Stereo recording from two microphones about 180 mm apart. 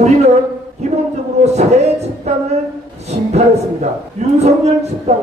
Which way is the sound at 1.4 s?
35° right (ahead or behind).